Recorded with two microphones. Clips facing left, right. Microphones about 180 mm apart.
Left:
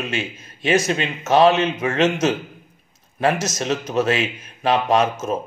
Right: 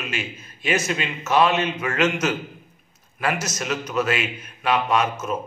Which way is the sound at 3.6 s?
30° left (ahead or behind).